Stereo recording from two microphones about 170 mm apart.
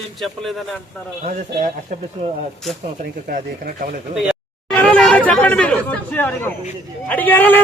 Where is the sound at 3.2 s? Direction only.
55° right (ahead or behind).